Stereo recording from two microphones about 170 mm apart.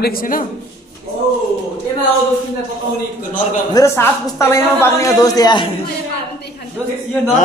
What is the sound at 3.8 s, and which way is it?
A woman's voice, 15° left (ahead or behind).